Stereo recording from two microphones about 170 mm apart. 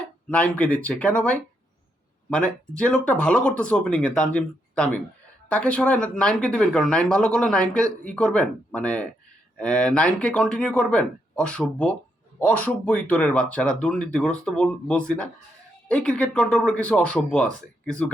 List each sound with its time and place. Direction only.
0.3 s speech: 10° left (ahead or behind)